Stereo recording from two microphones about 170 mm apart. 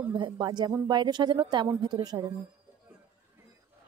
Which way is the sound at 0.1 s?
25° right (ahead or behind).